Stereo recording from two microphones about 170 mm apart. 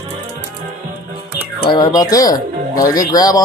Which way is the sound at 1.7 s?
20° left (ahead or behind).